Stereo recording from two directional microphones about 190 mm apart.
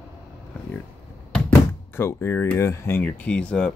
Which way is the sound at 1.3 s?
10° left (ahead or behind).